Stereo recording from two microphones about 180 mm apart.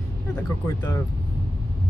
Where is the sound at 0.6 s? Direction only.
15° left (ahead or behind).